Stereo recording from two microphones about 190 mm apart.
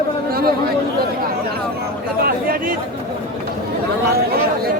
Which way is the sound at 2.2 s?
50° right (ahead or behind).